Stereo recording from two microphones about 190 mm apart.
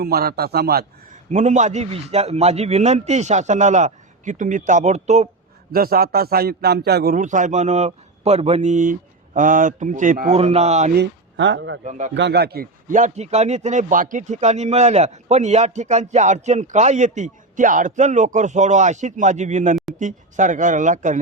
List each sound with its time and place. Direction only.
0.0 s a man's voice: 55° right (ahead or behind)
1.3 s speech: 40° right (ahead or behind)
5.7 s a man's voice: 50° right (ahead or behind); by 10.9 s 35° right (ahead or behind)
10.9 s speech: 70° right (ahead or behind)
11.9 s speech: 40° right (ahead or behind)
12.1 s speech: 65° right (ahead or behind); by 21.2 s 40° right (ahead or behind)